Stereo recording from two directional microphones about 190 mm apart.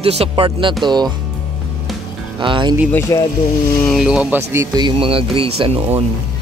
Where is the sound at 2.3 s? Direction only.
25° right (ahead or behind).